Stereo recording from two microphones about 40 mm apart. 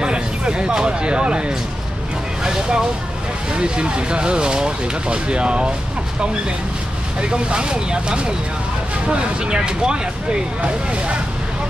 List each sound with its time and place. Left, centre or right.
0.0 s speech: right
2.4 s vehicle: centre
3.5 s speech: right
7.2 s speech: right